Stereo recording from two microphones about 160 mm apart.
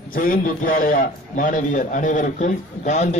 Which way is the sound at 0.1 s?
60° left (ahead or behind).